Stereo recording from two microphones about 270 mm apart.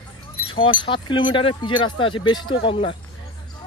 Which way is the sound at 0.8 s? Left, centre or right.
Centre.